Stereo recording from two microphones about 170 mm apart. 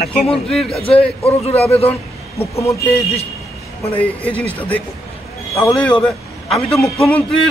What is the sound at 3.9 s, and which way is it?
A man's voice, 10° left (ahead or behind).